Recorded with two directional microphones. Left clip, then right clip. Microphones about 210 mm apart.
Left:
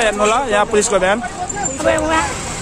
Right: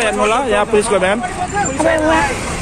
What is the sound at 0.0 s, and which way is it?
Speech, 5° left (ahead or behind).